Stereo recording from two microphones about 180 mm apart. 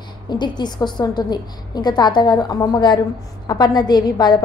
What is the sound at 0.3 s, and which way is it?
A woman's voice, 25° left (ahead or behind).